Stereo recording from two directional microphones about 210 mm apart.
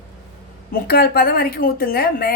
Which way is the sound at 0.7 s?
45° left (ahead or behind).